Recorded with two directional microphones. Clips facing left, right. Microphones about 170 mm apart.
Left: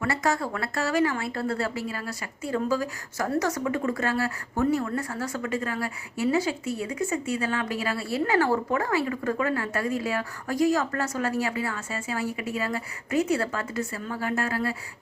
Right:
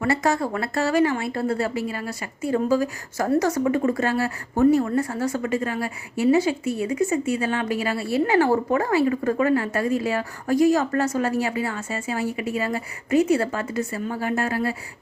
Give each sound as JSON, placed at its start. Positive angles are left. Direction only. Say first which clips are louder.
{"t": 0.0, "sound": "a woman's voice", "louder": "right 4 dB", "side_deg": -25}